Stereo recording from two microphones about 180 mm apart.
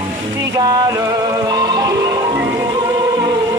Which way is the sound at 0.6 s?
20° right (ahead or behind).